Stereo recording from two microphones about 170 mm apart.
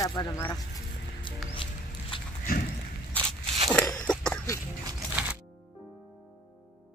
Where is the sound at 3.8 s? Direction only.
20° left (ahead or behind).